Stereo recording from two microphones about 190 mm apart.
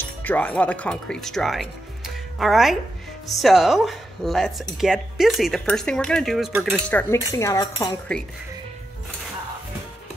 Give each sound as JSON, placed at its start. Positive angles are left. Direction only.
{"t": 0.2, "sound": "speech", "side_deg": 10}
{"t": 6.9, "sound": "cutlery", "side_deg": 10}
{"t": 8.1, "sound": "speech", "side_deg": 5}